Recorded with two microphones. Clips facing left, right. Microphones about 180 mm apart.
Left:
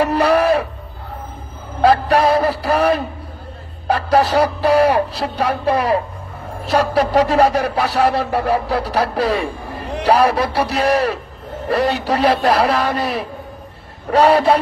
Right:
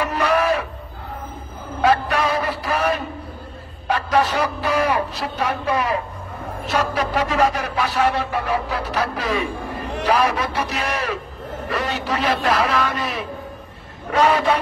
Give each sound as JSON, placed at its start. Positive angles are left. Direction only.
{"t": 0.0, "sound": "music", "side_deg": 35}
{"t": 1.8, "sound": "speech", "side_deg": 35}